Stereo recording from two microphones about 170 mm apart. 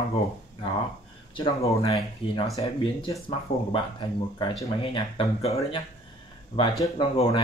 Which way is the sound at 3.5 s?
55° left (ahead or behind).